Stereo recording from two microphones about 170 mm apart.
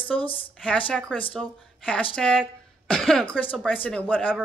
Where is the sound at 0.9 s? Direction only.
5° left (ahead or behind).